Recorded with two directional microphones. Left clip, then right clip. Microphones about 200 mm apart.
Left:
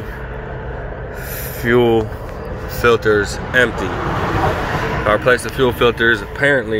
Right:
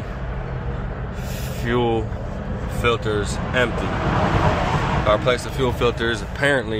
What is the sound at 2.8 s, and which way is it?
Speech, 35° left (ahead or behind).